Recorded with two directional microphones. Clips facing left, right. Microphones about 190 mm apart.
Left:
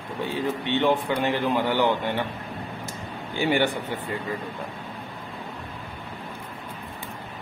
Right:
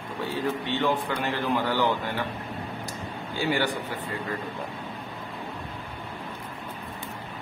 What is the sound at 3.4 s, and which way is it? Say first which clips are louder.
Speech: left 4 dB; 20° left (ahead or behind).